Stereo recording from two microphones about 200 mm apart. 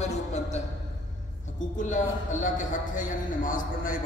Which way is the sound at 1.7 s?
40° left (ahead or behind).